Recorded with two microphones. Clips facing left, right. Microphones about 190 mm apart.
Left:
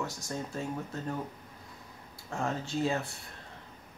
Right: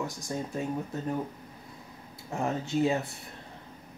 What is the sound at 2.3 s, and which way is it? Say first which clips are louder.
Speech: right 3 dB; 20° right (ahead or behind).